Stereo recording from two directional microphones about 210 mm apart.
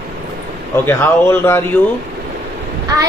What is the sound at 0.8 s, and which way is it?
Speech, 10° left (ahead or behind).